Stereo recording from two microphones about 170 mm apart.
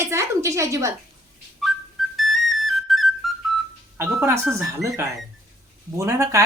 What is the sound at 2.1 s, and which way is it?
Whistle, centre (ahead or behind).